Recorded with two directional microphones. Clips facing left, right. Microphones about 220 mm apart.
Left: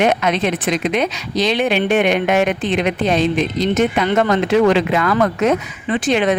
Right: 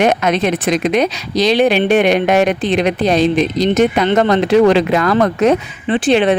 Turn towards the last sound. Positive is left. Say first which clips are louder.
# right 4 dB
turn(degrees=-30)  # may be behind; listen again after turning